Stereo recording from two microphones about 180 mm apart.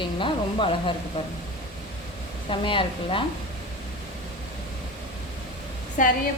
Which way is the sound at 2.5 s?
30° left (ahead or behind).